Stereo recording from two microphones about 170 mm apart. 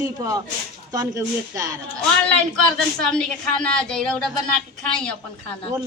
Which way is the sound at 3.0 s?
5° left (ahead or behind).